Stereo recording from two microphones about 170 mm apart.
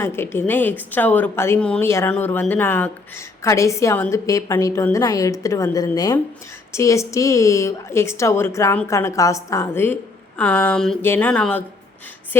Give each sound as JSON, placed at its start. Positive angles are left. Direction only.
{"t": 0.0, "sound": "a woman's voice", "side_deg": 15}